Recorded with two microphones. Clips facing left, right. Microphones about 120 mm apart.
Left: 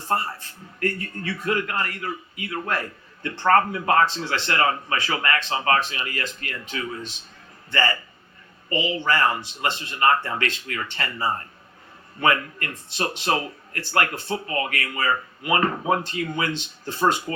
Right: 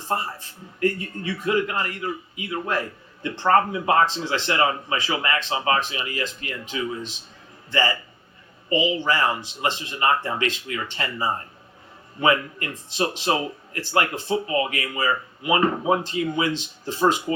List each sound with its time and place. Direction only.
0.1 s speech: 15° right (ahead or behind)